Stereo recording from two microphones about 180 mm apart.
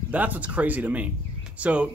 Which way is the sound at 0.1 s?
10° right (ahead or behind).